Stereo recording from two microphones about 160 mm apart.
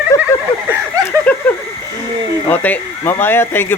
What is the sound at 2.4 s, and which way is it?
Speech, 10° left (ahead or behind).